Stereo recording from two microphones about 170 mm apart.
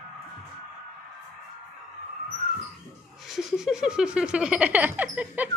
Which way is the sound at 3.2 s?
Centre (ahead or behind).